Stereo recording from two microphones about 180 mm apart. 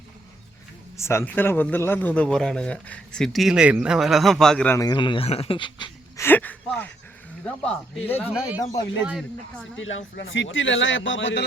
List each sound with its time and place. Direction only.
0.9 s a man's voice: 15° left (ahead or behind)
4.8 s speech: 25° left (ahead or behind)
6.2 s a sound: 10° left (ahead or behind)
7.4 s a man's voice: 5° left (ahead or behind)
8.3 s a man's voice: 5° right (ahead or behind)
8.5 s speech: 20° left (ahead or behind)
9.7 s a man's voice: 90° left